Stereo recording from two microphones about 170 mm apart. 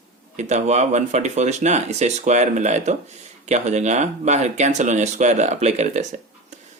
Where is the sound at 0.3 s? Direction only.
40° right (ahead or behind).